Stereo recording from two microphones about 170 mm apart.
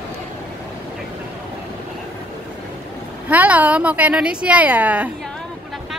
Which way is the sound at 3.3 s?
10° right (ahead or behind).